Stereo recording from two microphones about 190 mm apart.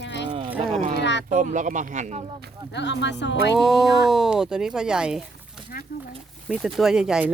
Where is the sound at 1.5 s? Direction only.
40° right (ahead or behind).